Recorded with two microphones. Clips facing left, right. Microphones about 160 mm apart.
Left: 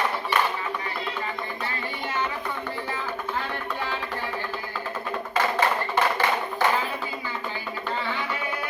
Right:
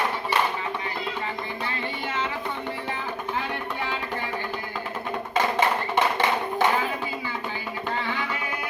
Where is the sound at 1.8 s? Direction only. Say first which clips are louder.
Left 1 dB; 25° right (ahead or behind).